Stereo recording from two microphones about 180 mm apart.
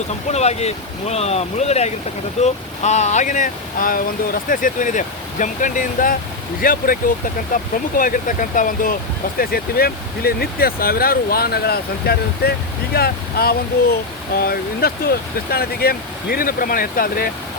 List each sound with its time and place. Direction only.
0.3 s speech: 35° left (ahead or behind); by 17.3 s 55° left (ahead or behind)